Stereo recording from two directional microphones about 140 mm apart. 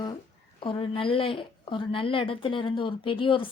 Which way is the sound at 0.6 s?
40° left (ahead or behind).